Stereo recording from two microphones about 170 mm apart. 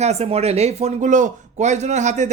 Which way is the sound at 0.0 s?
40° right (ahead or behind).